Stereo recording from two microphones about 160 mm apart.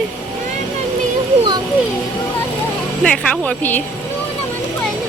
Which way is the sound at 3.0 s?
10° left (ahead or behind).